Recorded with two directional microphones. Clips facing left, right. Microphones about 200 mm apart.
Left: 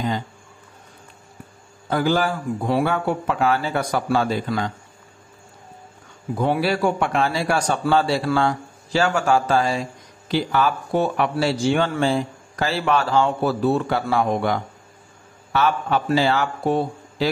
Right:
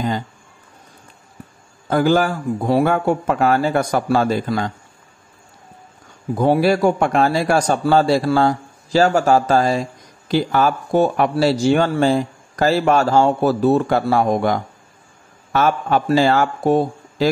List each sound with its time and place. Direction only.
1.9 s a man's voice: 50° right (ahead or behind)
6.3 s a man's voice: 40° right (ahead or behind)